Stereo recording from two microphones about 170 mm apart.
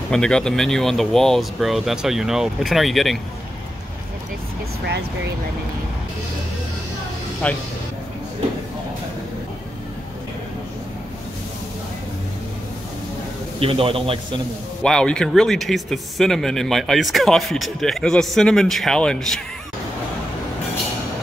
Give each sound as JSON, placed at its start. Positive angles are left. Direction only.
{"t": 0.1, "sound": "speech", "side_deg": 5}
{"t": 7.4, "sound": "speech", "side_deg": 5}
{"t": 13.6, "sound": "a man's voice", "side_deg": -35}
{"t": 14.8, "sound": "speech", "side_deg": 5}